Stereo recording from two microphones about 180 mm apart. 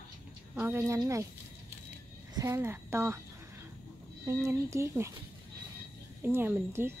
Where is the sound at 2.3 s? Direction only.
15° right (ahead or behind).